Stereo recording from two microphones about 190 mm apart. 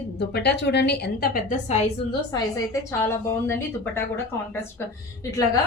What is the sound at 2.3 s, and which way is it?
A woman's voice, 15° left (ahead or behind).